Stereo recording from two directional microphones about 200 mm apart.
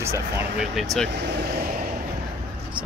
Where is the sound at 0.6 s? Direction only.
Centre (ahead or behind).